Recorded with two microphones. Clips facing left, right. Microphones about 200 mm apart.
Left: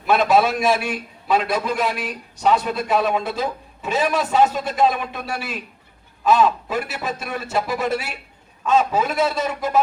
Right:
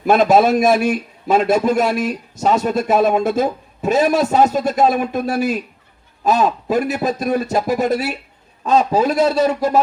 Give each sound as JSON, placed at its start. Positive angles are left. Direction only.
{"t": 0.0, "sound": "a man's voice", "side_deg": -45}